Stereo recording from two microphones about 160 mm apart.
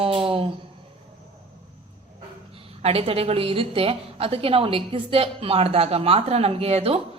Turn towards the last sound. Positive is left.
turn(degrees=-40)  # may be behind; listen again after turning